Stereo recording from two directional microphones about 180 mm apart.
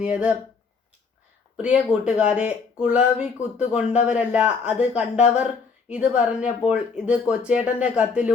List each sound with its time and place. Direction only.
0.0 s speech: 5° right (ahead or behind)
1.5 s speech: 5° right (ahead or behind)